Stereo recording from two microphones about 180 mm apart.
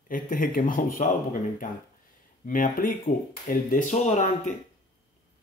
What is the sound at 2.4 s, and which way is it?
Speech, 50° left (ahead or behind).